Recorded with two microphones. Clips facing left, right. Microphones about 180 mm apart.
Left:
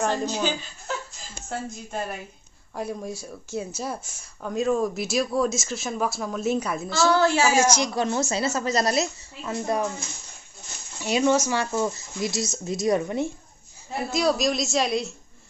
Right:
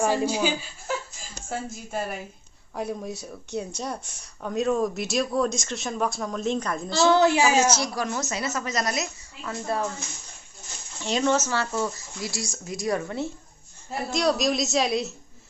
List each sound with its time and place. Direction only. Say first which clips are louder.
0.0 s a woman's voice: right 2 dB; 10° right (ahead or behind); by 6.9 s 5° left (ahead or behind)
7.1 s a woman's voice: right 1 dB; 20° right (ahead or behind)
7.5 s speech: left 1 dB; 10° left (ahead or behind)
7.9 s a woman's voice: left 4 dB; 25° left (ahead or behind)
11.0 s speech: left 2 dB; 10° left (ahead or behind)
14.1 s speech: even; centre (ahead or behind)